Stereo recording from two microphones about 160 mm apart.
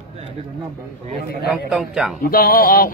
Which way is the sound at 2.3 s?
65° left (ahead or behind).